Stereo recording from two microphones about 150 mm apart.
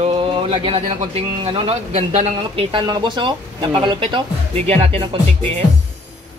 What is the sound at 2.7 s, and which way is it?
Speech, 30° right (ahead or behind).